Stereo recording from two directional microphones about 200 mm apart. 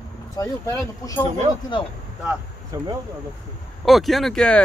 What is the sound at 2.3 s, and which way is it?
Speech, 15° right (ahead or behind).